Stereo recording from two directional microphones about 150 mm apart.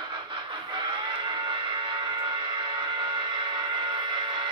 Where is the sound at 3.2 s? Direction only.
30° right (ahead or behind).